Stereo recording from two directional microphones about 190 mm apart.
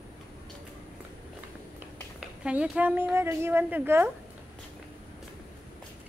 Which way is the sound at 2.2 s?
5° right (ahead or behind).